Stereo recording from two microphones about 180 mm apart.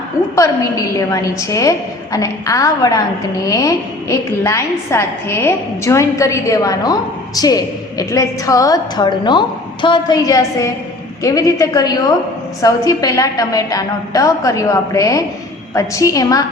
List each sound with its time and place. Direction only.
0.3 s a woman's voice: 20° left (ahead or behind)